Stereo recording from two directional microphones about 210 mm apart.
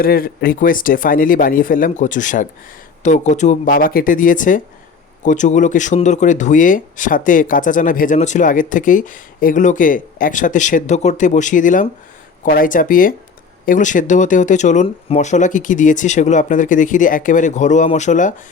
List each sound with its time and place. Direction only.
0.0 s speech: 45° left (ahead or behind)